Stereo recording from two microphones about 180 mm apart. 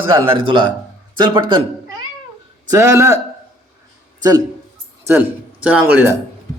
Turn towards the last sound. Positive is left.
turn(degrees=-10)  # may be behind; listen again after turning